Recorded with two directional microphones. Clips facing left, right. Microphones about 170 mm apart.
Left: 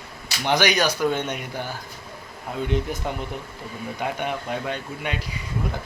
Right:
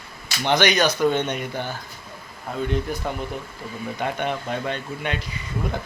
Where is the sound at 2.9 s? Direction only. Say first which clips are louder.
Right 2 dB; 20° left (ahead or behind).